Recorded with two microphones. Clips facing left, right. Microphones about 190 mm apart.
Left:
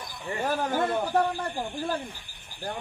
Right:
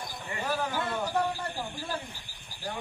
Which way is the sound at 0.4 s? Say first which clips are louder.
Left 5 dB; 50° left (ahead or behind).